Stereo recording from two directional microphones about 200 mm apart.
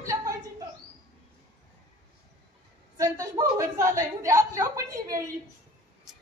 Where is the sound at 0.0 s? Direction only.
15° right (ahead or behind).